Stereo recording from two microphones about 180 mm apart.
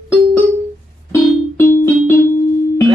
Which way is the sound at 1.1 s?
15° left (ahead or behind).